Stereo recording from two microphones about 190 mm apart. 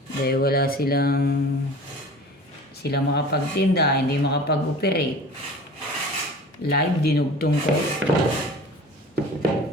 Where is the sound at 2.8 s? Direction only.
60° left (ahead or behind).